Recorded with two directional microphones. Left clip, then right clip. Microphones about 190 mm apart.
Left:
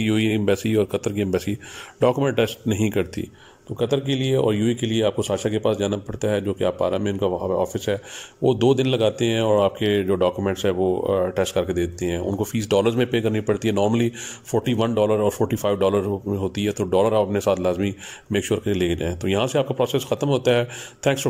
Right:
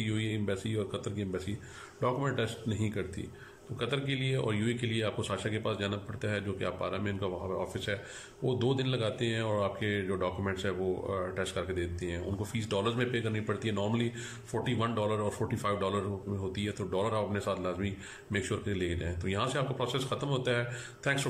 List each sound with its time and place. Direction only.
0.0 s speech: 50° left (ahead or behind)